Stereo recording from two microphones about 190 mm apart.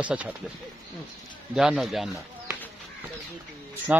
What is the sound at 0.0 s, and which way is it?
Speech, 5° right (ahead or behind).